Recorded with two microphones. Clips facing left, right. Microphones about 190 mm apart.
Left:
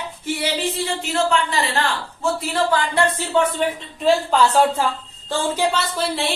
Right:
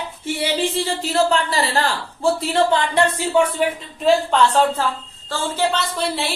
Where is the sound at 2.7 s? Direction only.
10° right (ahead or behind).